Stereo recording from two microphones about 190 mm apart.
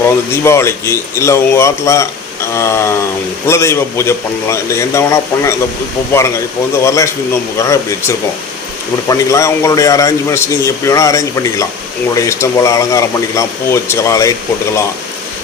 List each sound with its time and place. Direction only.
0.0 s speech: 15° left (ahead or behind)